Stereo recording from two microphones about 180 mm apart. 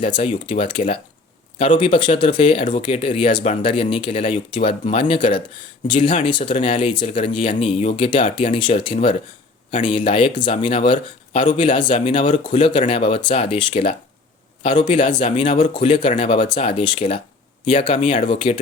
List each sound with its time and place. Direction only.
0.0 s speech: 30° left (ahead or behind)